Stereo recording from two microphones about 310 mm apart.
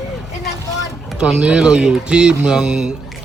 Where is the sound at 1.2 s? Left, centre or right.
Centre.